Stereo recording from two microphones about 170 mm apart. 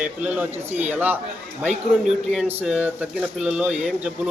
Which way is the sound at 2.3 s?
5° right (ahead or behind).